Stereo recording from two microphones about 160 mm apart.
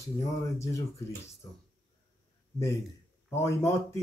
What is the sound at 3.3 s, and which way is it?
Speech, 15° left (ahead or behind).